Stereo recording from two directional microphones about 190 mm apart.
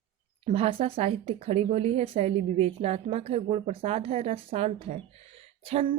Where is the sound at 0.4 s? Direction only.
30° right (ahead or behind).